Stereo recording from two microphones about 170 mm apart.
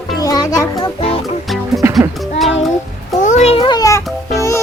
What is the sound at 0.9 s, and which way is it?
Music, 35° left (ahead or behind).